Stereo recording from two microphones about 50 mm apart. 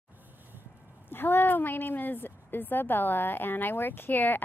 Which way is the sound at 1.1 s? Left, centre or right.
Left.